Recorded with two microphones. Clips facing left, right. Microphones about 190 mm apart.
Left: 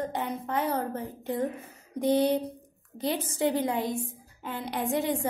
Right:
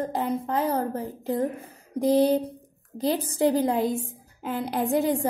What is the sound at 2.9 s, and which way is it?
Speech, 35° right (ahead or behind).